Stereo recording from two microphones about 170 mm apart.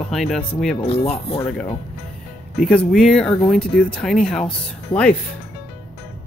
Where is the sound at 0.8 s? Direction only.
35° left (ahead or behind).